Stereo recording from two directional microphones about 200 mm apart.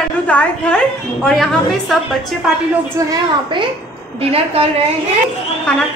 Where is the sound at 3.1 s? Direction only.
25° right (ahead or behind).